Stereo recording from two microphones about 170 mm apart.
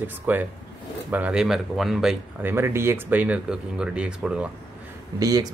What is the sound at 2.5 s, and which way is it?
Speech, 15° right (ahead or behind).